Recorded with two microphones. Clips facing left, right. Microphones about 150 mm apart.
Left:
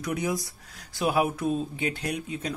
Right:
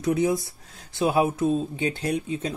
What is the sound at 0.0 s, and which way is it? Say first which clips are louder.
Speech: right 6 dB; 25° right (ahead or behind).